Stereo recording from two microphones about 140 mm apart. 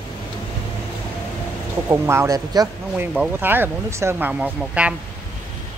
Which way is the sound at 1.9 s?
20° right (ahead or behind).